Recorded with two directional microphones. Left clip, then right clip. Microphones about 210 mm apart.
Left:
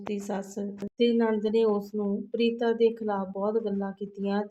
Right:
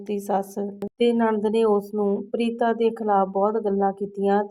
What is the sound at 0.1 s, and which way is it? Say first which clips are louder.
Speech: right 9 dB; 30° right (ahead or behind).